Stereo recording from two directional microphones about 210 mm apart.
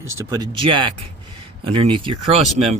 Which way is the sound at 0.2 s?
20° right (ahead or behind).